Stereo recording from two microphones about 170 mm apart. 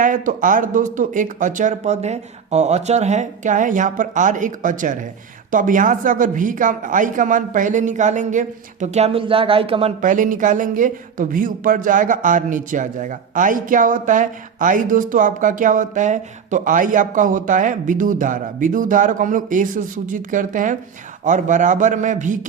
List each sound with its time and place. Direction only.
0.0 s speech: 50° right (ahead or behind); by 9.9 s 35° right (ahead or behind)
10.0 s speech: 50° right (ahead or behind)